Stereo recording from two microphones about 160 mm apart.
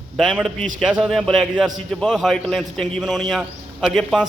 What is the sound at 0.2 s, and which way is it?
A man's voice, 5° right (ahead or behind).